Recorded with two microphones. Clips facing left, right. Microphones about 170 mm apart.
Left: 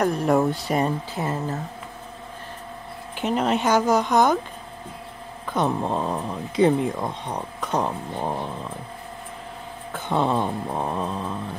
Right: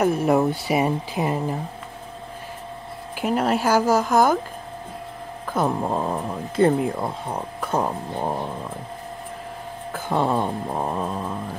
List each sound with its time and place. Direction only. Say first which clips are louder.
0.0 s speech: right 1 dB; 5° right (ahead or behind)
3.2 s speech: right 1 dB; 5° right (ahead or behind)
5.5 s speech: right 1 dB; 5° right (ahead or behind)
9.9 s speech: even; 5° right (ahead or behind)